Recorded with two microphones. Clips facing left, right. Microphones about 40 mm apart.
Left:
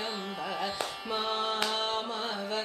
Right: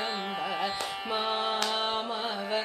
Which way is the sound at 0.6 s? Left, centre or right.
Centre.